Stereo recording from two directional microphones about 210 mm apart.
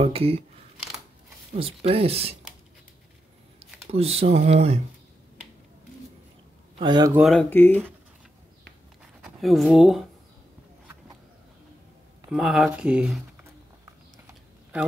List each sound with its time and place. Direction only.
0.0 s speech: 30° right (ahead or behind)
1.5 s speech: 25° right (ahead or behind)
3.9 s speech: 30° right (ahead or behind)
6.8 s speech: 20° right (ahead or behind)
7.2 s speech: centre (ahead or behind)
9.2 s speech: centre (ahead or behind)
12.3 s speech: centre (ahead or behind)
14.2 s a sound: 5° right (ahead or behind)